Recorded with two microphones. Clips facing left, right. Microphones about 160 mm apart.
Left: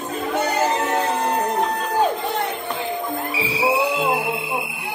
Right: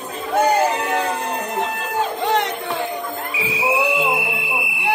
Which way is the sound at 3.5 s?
30° left (ahead or behind).